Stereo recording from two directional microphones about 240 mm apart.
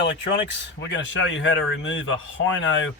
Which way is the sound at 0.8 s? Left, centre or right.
Left.